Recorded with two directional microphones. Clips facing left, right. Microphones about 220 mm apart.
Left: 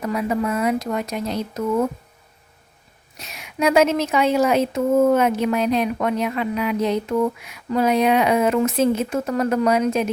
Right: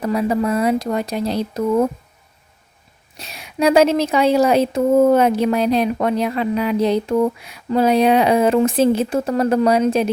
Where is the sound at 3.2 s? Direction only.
35° right (ahead or behind).